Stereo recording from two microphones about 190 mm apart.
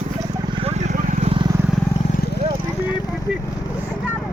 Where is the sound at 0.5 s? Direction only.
35° right (ahead or behind).